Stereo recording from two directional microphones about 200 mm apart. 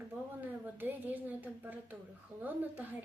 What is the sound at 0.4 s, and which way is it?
A woman's voice, 10° right (ahead or behind).